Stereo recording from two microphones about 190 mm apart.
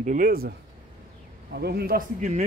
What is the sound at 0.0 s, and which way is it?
A man's voice, 45° right (ahead or behind).